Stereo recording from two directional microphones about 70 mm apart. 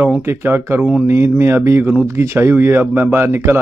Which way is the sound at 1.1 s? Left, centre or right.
Right.